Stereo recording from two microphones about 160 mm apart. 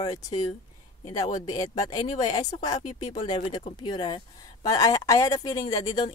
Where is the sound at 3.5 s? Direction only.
30° left (ahead or behind).